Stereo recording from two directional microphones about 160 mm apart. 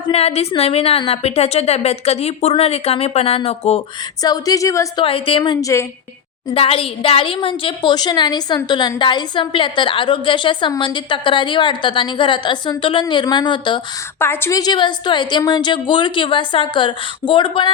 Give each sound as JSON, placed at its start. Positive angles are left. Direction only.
{"t": 0.1, "sound": "a woman's voice", "side_deg": 40}
{"t": 4.2, "sound": "a woman's voice", "side_deg": 25}
{"t": 5.0, "sound": "a woman's voice", "side_deg": 35}
{"t": 5.4, "sound": "a woman's voice", "side_deg": 20}
{"t": 6.5, "sound": "a woman's voice", "side_deg": 35}
{"t": 14.2, "sound": "a woman's voice", "side_deg": 15}